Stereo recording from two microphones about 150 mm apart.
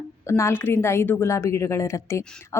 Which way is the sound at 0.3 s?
20° left (ahead or behind).